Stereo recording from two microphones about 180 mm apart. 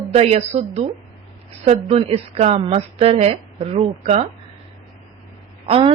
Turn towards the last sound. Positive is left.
turn(degrees=-30)  # may be behind; listen again after turning